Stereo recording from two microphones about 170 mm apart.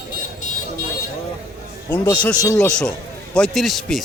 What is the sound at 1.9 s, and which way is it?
A man's voice, 10° left (ahead or behind).